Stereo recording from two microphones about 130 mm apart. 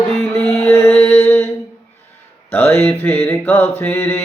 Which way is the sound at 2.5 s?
15° left (ahead or behind).